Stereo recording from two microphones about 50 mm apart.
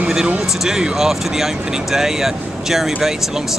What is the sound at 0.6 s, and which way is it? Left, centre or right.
Speech, centre.